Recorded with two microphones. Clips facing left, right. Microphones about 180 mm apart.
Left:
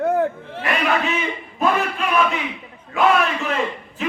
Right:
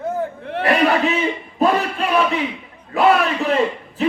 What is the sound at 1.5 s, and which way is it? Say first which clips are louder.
Speech: right 2 dB; 35° right (ahead or behind).